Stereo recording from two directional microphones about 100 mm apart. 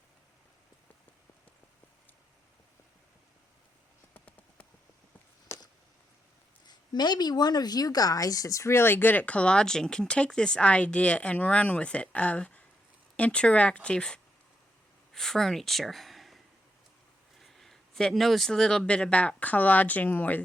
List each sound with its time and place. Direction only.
4.1 s clip-clop: 15° left (ahead or behind)
5.5 s a sound: 30° left (ahead or behind)
6.7 s speech: 45° left (ahead or behind); by 16.4 s centre (ahead or behind)
17.4 s speech: 5° left (ahead or behind)